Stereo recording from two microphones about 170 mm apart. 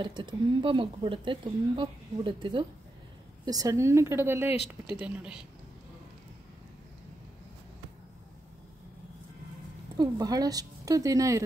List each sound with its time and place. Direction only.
0.0 s a woman's voice: 25° right (ahead or behind); by 5.5 s 5° right (ahead or behind)
9.9 s speech: 20° right (ahead or behind)